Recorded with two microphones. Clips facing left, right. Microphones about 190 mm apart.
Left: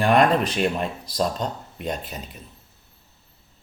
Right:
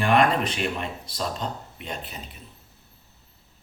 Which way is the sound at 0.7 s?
40° left (ahead or behind).